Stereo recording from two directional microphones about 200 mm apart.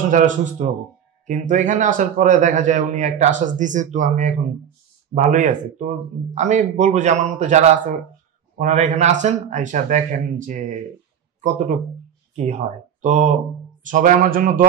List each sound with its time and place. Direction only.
0.0 s a man's voice: 40° right (ahead or behind)